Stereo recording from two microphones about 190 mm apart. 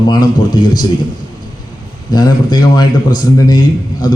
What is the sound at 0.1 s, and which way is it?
Speech, 20° left (ahead or behind).